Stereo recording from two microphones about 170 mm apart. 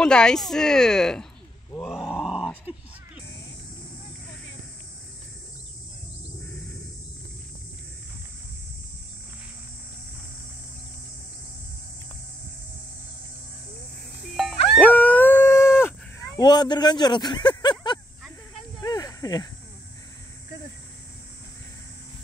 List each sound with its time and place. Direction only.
0.0 s a woman's voice: 5° left (ahead or behind)
2.0 s grunt: centre (ahead or behind)
14.2 s music: centre (ahead or behind); by 17.9 s 25° left (ahead or behind)
18.8 s snake: 20° left (ahead or behind)